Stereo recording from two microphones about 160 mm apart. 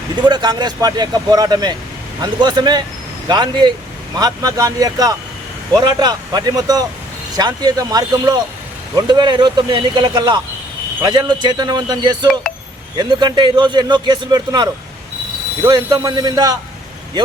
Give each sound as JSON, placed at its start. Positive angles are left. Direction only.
{"t": 0.2, "sound": "a man's voice", "side_deg": -25}